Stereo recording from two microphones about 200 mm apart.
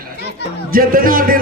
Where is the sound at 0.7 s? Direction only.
45° right (ahead or behind).